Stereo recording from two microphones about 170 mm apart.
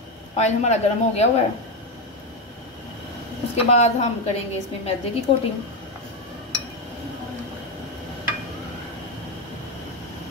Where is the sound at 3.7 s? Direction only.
40° left (ahead or behind).